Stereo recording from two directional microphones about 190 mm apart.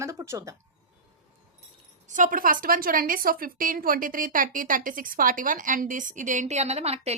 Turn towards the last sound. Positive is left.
turn(degrees=-35)  # may be behind; listen again after turning